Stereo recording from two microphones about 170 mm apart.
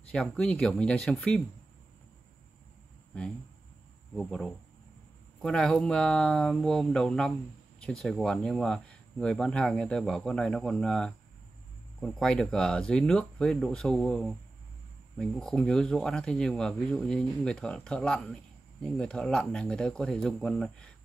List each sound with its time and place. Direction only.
0.1 s speech: 5° left (ahead or behind)
4.1 s speech: centre (ahead or behind)